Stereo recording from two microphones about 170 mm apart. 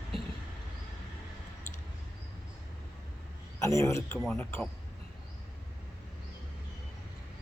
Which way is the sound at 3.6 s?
15° left (ahead or behind).